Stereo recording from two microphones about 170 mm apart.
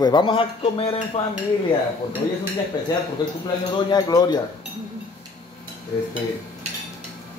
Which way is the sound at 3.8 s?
25° left (ahead or behind).